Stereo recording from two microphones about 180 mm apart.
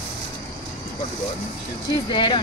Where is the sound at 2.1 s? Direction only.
25° left (ahead or behind).